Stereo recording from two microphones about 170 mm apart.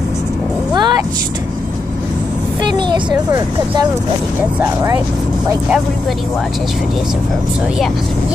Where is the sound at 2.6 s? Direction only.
25° right (ahead or behind).